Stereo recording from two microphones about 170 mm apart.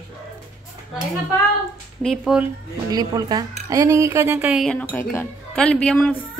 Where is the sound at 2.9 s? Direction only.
25° right (ahead or behind).